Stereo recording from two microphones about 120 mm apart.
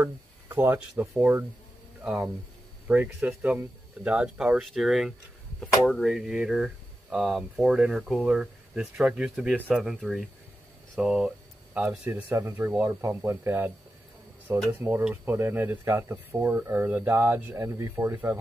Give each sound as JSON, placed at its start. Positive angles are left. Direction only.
{"t": 0.0, "sound": "speech", "side_deg": -15}